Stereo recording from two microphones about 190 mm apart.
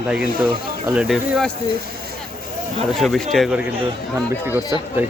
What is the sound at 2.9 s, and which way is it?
Speech, centre (ahead or behind).